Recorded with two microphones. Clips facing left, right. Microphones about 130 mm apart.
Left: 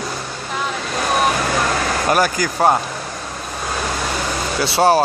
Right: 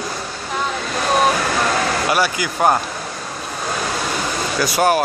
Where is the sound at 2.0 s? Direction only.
45° left (ahead or behind).